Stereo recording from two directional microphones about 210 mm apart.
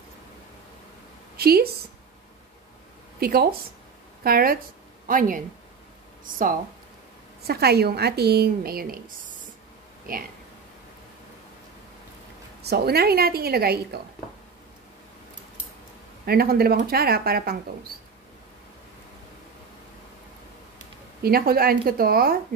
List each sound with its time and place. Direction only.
1.3 s a woman's voice: 45° right (ahead or behind)
3.2 s a woman's voice: 45° right (ahead or behind)
12.6 s a woman's voice: 50° right (ahead or behind)
16.3 s a woman's voice: 45° right (ahead or behind)
21.2 s a woman's voice: 45° right (ahead or behind)